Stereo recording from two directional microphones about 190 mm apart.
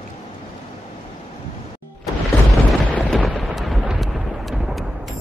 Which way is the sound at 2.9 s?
Centre (ahead or behind).